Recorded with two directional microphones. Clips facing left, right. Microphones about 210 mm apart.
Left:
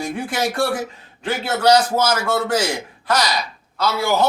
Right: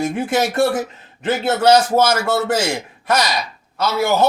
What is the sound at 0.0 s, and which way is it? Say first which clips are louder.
Speech: right 4 dB; 25° right (ahead or behind).